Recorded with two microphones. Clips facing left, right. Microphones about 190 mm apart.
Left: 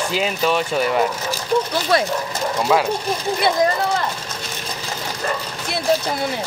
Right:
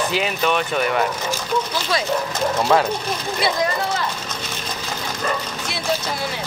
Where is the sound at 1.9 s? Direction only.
55° left (ahead or behind).